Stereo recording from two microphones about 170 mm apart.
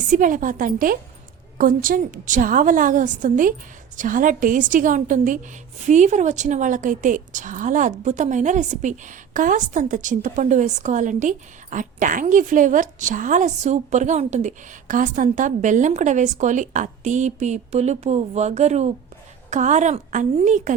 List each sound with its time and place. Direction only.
0.1 s a woman's voice: 50° right (ahead or behind)